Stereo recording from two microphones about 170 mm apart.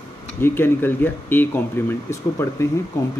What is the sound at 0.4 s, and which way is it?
Speech, 10° left (ahead or behind).